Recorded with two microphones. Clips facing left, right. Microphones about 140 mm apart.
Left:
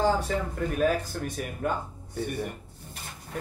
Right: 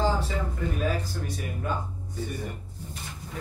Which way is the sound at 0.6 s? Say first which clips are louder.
Left 4 dB; 55° left (ahead or behind).